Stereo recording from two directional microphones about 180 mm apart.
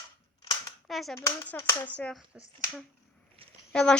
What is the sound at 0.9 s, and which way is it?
Speech, centre (ahead or behind).